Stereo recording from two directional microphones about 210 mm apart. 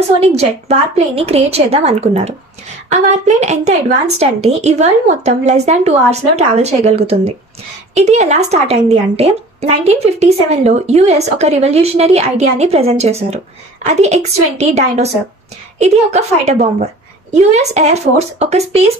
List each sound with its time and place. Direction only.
0.2 s a woman's voice: 30° right (ahead or behind)